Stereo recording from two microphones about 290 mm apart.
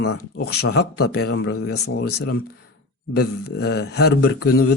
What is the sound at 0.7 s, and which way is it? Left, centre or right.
Speech, left.